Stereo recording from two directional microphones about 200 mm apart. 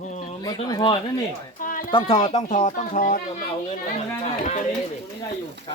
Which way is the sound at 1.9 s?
25° left (ahead or behind).